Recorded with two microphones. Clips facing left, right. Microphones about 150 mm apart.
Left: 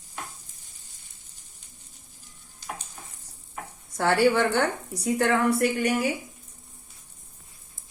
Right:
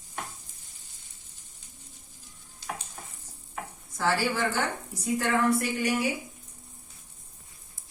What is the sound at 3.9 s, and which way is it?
A woman's voice, 70° left (ahead or behind).